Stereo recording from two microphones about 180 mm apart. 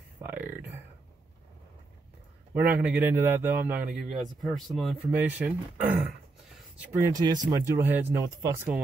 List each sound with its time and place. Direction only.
0.2 s speech: 10° right (ahead or behind)
2.5 s speech: 10° right (ahead or behind)
5.1 s speech: 10° right (ahead or behind)
6.9 s speech: 20° right (ahead or behind)